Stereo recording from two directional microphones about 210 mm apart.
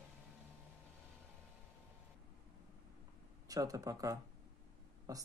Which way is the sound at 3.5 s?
15° right (ahead or behind).